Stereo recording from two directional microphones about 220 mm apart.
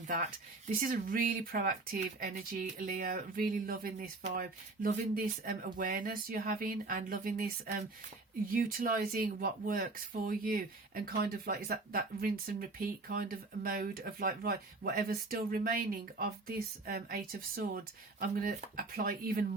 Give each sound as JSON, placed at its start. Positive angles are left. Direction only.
{"t": 0.8, "sound": "speech", "side_deg": -40}
{"t": 8.5, "sound": "speech", "side_deg": -40}